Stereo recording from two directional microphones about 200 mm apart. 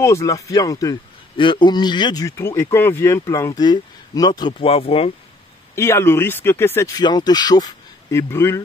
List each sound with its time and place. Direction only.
0.0 s a man's voice: 15° left (ahead or behind)
5.8 s speech: 15° left (ahead or behind)